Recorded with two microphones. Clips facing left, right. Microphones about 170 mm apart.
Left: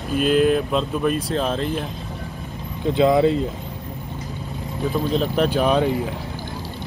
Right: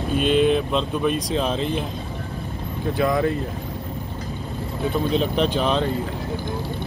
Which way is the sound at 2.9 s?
20° left (ahead or behind).